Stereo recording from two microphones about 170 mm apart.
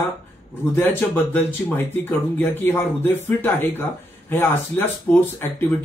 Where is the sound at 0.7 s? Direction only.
10° left (ahead or behind).